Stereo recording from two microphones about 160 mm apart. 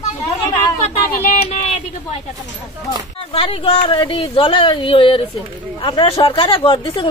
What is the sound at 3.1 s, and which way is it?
Speech, 35° left (ahead or behind).